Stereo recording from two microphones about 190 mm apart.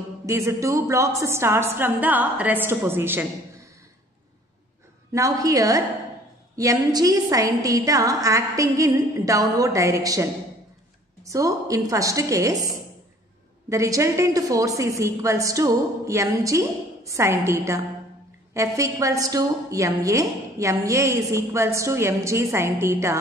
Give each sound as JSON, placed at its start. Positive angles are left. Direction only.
{"t": 0.3, "sound": "a woman's voice", "side_deg": -15}
{"t": 5.1, "sound": "a woman's voice", "side_deg": -15}
{"t": 11.2, "sound": "a woman's voice", "side_deg": -15}